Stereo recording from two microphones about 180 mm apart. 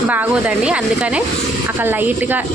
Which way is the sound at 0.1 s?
10° right (ahead or behind).